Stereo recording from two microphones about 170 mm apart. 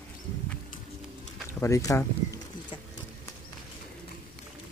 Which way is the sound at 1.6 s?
20° left (ahead or behind).